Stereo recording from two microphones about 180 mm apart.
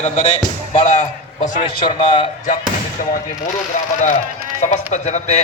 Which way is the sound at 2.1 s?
30° left (ahead or behind).